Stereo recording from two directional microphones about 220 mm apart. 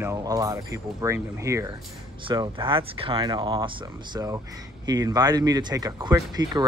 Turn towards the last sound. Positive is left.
turn(degrees=-20)  # may be behind; listen again after turning